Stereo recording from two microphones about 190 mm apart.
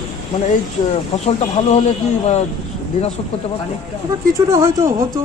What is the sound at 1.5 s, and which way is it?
Speech, 25° left (ahead or behind).